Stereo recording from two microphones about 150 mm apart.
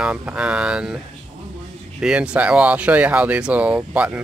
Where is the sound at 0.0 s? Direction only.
10° right (ahead or behind).